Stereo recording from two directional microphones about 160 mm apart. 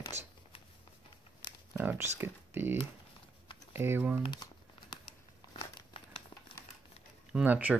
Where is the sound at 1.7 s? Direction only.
15° right (ahead or behind).